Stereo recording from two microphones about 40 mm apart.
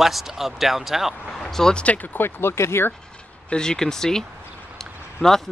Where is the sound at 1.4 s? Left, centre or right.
Centre.